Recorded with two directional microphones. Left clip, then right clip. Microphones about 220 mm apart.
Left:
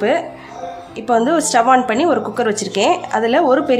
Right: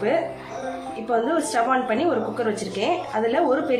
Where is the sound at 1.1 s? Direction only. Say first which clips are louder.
Left 8 dB; 55° left (ahead or behind).